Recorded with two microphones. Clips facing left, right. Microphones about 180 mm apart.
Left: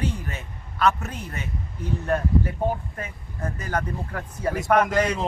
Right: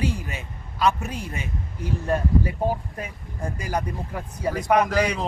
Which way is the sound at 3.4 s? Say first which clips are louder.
Even; 10° right (ahead or behind).